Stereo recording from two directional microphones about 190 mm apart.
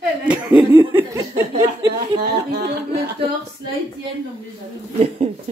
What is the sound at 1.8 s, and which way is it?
Speech, 60° right (ahead or behind).